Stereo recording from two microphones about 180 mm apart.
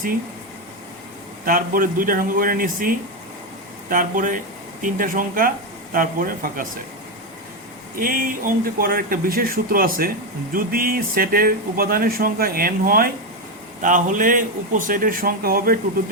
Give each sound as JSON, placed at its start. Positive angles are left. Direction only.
{"t": 1.5, "sound": "speech", "side_deg": -50}
{"t": 7.9, "sound": "speech", "side_deg": -55}